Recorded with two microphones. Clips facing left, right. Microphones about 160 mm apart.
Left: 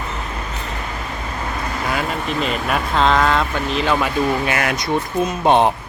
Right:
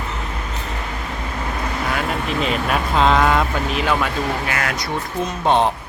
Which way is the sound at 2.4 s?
Centre (ahead or behind).